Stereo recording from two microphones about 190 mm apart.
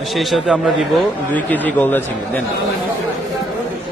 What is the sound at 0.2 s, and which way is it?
A man's voice, centre (ahead or behind).